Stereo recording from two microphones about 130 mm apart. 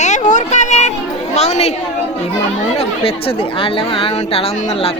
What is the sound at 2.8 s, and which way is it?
Speech, 50° left (ahead or behind).